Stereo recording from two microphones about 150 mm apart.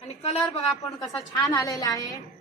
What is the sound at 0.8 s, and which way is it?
A woman's voice, 25° left (ahead or behind).